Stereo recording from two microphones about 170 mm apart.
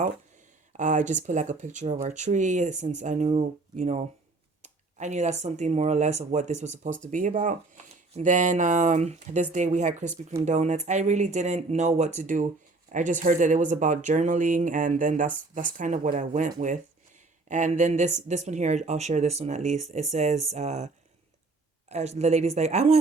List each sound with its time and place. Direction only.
0.8 s speech: 45° right (ahead or behind)